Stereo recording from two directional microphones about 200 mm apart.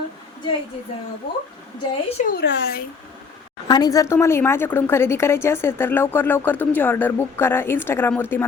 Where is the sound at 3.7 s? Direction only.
20° left (ahead or behind).